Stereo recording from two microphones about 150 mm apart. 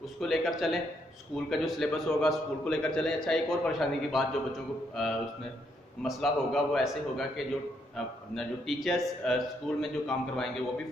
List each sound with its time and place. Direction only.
0.2 s a man's voice: centre (ahead or behind)